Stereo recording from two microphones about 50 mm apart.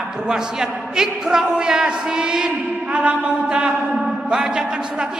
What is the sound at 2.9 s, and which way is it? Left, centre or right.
Mantra, right.